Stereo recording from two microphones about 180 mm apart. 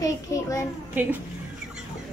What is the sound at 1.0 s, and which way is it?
Speech, 10° right (ahead or behind).